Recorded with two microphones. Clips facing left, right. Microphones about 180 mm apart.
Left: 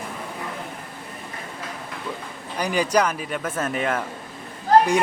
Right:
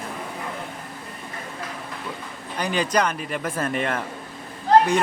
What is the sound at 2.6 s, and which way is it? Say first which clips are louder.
Speech: left 2 dB; 10° left (ahead or behind).